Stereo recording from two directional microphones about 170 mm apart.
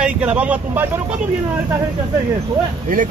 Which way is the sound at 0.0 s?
5° right (ahead or behind).